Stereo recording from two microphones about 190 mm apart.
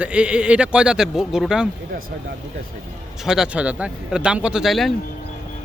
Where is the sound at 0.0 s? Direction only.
5° right (ahead or behind).